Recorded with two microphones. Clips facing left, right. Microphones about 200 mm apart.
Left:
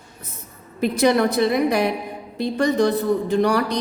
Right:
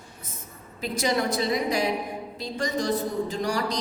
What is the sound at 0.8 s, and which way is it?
A woman's voice, 60° left (ahead or behind).